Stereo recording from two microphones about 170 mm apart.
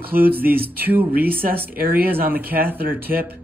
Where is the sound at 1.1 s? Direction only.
60° right (ahead or behind).